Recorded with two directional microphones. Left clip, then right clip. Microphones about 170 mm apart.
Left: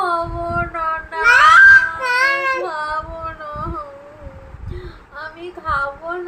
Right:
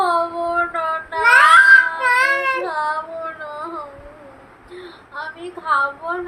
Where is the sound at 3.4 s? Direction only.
5° left (ahead or behind).